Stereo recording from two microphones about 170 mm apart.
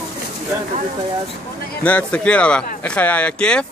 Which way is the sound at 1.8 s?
10° left (ahead or behind).